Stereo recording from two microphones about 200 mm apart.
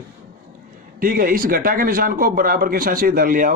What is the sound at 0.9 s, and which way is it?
Speech, 45° right (ahead or behind).